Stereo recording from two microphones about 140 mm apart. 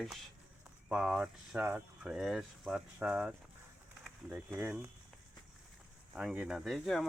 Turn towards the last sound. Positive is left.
turn(degrees=0)  # may be behind; listen again after turning